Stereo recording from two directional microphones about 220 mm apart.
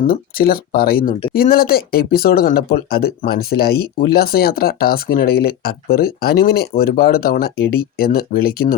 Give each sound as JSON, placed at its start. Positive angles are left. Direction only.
{"t": 0.1, "sound": "speech", "side_deg": 40}